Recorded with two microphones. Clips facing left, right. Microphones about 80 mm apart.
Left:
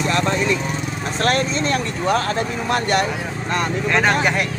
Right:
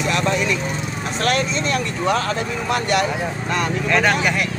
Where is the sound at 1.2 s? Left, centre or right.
Left.